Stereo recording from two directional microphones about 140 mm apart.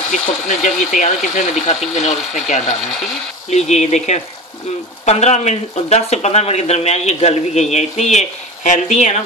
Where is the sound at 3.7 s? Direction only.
55° left (ahead or behind).